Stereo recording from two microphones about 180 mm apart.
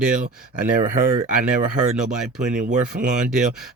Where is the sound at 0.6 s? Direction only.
50° right (ahead or behind).